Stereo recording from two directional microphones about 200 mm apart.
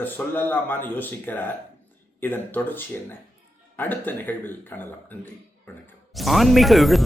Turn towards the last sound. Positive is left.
turn(degrees=0)  # may be behind; listen again after turning